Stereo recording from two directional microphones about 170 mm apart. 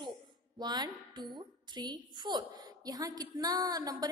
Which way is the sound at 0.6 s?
25° right (ahead or behind).